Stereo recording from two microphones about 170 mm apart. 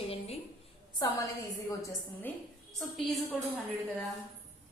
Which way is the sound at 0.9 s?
20° left (ahead or behind).